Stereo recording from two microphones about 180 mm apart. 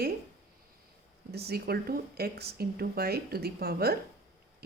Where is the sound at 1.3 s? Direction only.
60° right (ahead or behind).